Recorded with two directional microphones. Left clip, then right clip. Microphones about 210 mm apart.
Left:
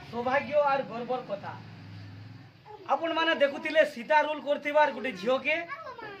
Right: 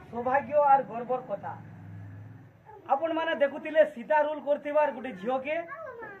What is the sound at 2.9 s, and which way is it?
A man's voice, 25° left (ahead or behind).